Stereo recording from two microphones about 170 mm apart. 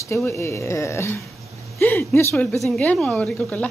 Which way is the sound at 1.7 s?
15° left (ahead or behind).